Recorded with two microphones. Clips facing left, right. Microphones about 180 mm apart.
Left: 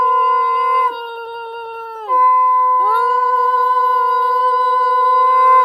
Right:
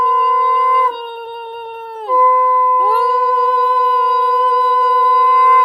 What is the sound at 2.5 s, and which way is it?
Music, 15° right (ahead or behind).